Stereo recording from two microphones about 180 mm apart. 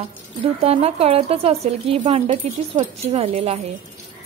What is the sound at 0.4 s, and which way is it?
Speech, 30° right (ahead or behind).